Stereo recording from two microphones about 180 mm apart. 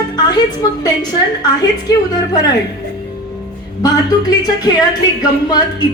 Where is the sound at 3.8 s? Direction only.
20° left (ahead or behind).